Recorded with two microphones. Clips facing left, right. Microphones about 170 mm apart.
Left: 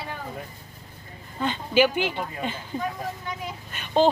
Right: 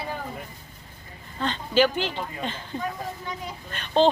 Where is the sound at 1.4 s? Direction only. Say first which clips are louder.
Left 1 dB; 10° left (ahead or behind).